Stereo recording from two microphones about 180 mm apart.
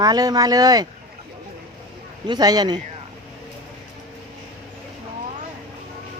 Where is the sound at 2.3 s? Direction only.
20° right (ahead or behind).